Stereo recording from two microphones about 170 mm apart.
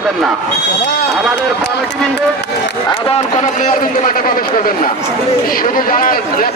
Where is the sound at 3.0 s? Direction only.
40° left (ahead or behind); by 6.5 s 55° left (ahead or behind).